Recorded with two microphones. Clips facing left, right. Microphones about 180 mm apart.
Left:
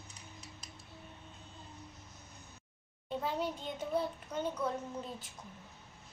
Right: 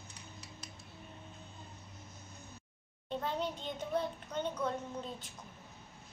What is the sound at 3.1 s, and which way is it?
A child's voice, 5° left (ahead or behind).